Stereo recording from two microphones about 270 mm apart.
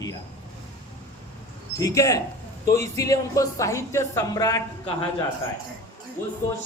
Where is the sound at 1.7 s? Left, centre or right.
Centre.